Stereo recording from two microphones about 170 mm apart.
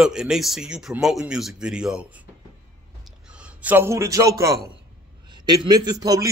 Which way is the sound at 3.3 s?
10° right (ahead or behind).